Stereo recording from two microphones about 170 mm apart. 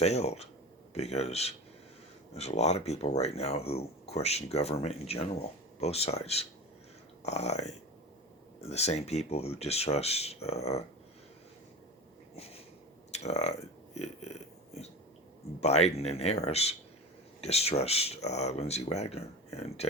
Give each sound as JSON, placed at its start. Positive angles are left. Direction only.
{"t": 0.0, "sound": "speech", "side_deg": 40}
{"t": 13.1, "sound": "burping", "side_deg": 40}
{"t": 15.6, "sound": "speech", "side_deg": 40}